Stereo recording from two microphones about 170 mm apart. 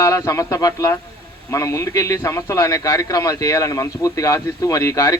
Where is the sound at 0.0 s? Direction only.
20° left (ahead or behind).